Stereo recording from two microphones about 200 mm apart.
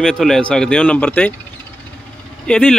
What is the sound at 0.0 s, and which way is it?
Speech, centre (ahead or behind).